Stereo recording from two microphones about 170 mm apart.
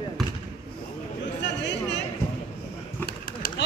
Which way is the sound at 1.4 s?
90° left.